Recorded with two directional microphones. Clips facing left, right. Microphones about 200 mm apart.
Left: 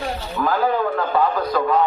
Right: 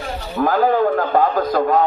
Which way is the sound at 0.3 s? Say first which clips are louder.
Right 4 dB; 45° right (ahead or behind).